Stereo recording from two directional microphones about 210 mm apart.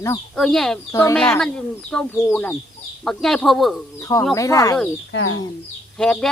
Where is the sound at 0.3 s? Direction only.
Centre (ahead or behind).